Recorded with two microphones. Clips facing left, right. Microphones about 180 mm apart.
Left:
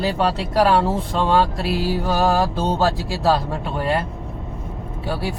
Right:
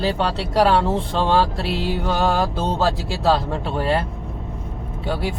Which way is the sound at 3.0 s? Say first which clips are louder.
Even; 25° right (ahead or behind).